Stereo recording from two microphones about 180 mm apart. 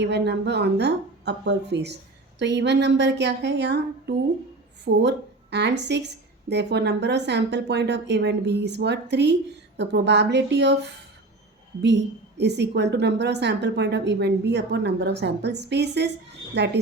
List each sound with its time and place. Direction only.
0.0 s a woman's voice: 70° right (ahead or behind)
12.4 s a woman's voice: 70° right (ahead or behind)